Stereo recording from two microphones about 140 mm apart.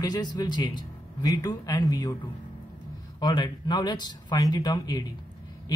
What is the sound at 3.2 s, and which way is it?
Speech, 30° left (ahead or behind).